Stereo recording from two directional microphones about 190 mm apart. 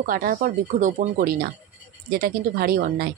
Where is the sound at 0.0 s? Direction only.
45° right (ahead or behind).